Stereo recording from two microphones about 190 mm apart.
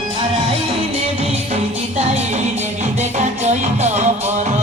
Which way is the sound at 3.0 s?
35° right (ahead or behind).